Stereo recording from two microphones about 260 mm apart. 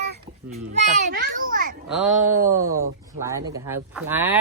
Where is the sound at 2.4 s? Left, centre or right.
Centre.